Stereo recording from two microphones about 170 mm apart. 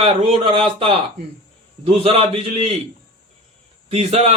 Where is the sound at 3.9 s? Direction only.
40° right (ahead or behind).